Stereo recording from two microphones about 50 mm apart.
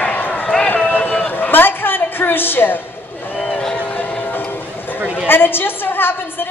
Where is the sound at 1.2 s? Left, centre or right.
Left.